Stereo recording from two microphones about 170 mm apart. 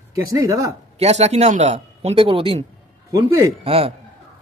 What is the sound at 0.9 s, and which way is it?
Speech, 40° right (ahead or behind).